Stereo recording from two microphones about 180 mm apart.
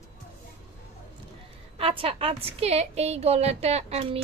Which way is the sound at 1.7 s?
30° right (ahead or behind).